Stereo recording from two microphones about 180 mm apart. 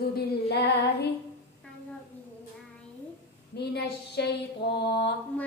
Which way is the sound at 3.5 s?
65° left (ahead or behind).